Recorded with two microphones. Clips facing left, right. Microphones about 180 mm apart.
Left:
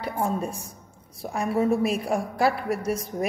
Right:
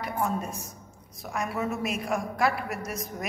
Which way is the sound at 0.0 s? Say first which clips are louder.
Left 3 dB; 30° left (ahead or behind).